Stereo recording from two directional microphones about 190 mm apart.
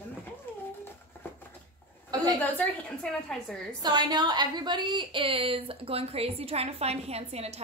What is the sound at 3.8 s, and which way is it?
A woman's voice, 20° right (ahead or behind).